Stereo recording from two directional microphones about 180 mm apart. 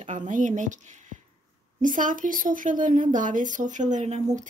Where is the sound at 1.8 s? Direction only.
45° right (ahead or behind).